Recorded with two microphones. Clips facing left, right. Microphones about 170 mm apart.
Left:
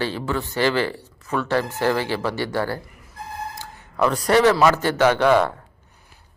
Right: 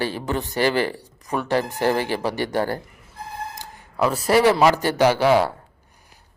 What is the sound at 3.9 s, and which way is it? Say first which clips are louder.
A man's voice: even; 5° right (ahead or behind).